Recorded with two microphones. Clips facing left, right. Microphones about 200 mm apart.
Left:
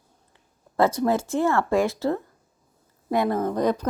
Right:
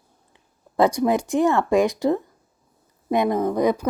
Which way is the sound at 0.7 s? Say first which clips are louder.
Right 2 dB; 15° right (ahead or behind).